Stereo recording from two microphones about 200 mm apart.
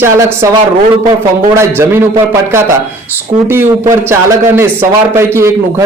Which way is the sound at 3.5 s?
15° right (ahead or behind).